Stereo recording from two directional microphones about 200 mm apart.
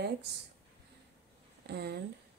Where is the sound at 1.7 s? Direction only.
55° right (ahead or behind).